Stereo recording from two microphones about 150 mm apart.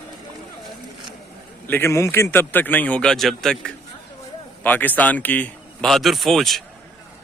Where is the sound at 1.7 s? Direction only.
15° left (ahead or behind).